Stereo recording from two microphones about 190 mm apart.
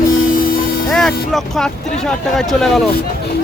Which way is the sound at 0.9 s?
Centre (ahead or behind).